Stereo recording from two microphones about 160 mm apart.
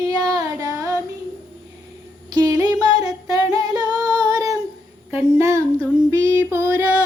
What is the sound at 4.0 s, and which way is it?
Female singing, 20° right (ahead or behind).